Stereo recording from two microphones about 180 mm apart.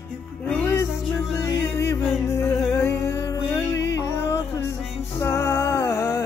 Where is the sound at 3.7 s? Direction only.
80° left.